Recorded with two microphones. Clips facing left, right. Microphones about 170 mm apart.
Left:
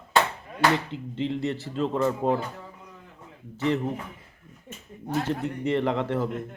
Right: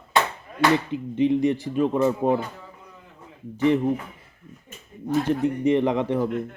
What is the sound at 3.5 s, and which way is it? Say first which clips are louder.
Speech: right 5 dB; 15° right (ahead or behind).